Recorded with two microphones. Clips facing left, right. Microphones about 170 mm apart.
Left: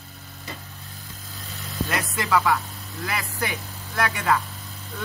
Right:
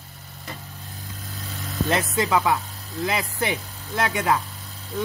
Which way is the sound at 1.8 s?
20° right (ahead or behind).